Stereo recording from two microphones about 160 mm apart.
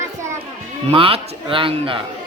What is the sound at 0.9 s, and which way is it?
Speech, 35° right (ahead or behind).